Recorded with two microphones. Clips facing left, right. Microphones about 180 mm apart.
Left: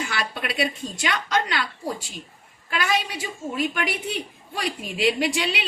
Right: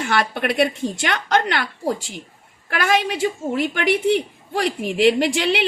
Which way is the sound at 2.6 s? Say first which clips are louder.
Right 5 dB; 60° right (ahead or behind).